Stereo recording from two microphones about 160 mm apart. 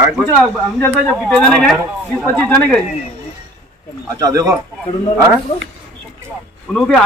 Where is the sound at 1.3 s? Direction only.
5° left (ahead or behind).